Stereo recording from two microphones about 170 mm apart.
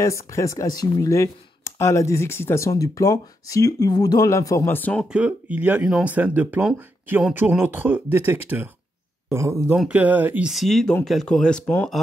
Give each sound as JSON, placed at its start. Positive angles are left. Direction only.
{"t": 0.0, "sound": "speech", "side_deg": 15}
{"t": 5.0, "sound": "speech", "side_deg": -5}